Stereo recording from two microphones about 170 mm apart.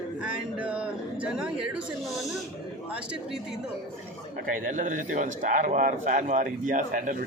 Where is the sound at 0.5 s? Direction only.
10° right (ahead or behind).